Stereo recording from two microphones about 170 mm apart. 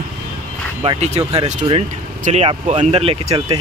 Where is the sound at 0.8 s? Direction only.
40° right (ahead or behind).